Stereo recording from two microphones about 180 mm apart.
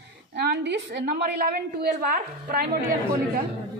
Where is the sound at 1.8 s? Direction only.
50° right (ahead or behind).